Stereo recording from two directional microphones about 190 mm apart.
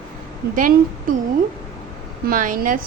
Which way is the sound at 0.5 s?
45° right (ahead or behind).